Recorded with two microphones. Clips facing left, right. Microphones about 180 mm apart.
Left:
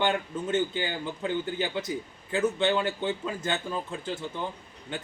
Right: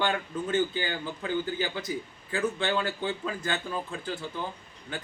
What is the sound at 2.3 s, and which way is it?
A man's voice, 25° left (ahead or behind).